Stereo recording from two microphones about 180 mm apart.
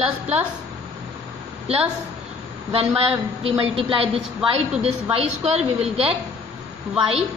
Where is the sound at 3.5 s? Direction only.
30° right (ahead or behind).